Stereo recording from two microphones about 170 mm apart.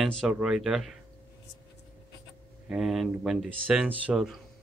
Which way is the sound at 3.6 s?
10° right (ahead or behind).